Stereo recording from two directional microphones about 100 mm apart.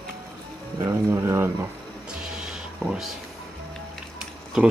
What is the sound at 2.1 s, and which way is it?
Music, 5° right (ahead or behind).